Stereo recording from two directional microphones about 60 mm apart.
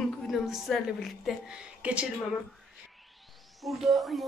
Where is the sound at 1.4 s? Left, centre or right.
Centre.